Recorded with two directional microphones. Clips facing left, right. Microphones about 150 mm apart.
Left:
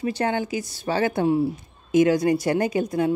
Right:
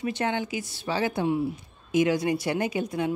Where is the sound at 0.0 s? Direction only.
40° left (ahead or behind).